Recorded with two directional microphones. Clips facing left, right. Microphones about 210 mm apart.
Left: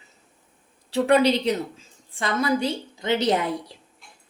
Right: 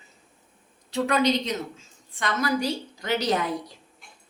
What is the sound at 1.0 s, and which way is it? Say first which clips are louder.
A woman's voice: left 5 dB; 30° left (ahead or behind).